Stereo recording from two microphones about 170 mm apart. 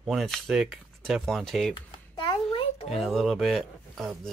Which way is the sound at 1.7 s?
30° left (ahead or behind).